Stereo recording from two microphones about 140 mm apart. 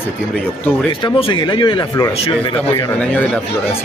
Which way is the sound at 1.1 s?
40° left (ahead or behind).